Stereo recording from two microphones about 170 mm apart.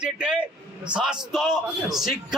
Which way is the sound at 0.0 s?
5° right (ahead or behind).